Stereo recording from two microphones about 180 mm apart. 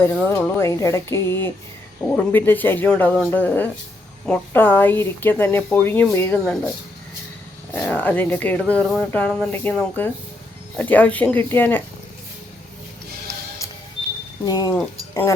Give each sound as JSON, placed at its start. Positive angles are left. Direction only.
{"t": 0.0, "sound": "speech", "side_deg": 15}
{"t": 7.7, "sound": "speech", "side_deg": 10}
{"t": 14.4, "sound": "speech", "side_deg": 20}